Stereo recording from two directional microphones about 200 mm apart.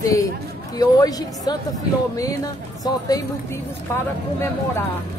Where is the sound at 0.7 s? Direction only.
20° left (ahead or behind).